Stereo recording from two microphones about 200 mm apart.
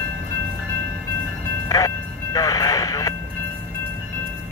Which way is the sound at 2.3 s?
15° left (ahead or behind).